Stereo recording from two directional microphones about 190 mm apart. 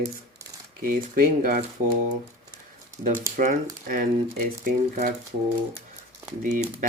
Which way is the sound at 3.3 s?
45° right (ahead or behind).